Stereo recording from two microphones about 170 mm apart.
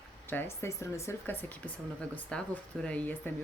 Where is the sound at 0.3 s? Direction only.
15° left (ahead or behind).